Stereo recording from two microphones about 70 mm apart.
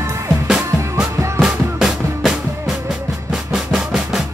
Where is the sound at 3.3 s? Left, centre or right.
Centre.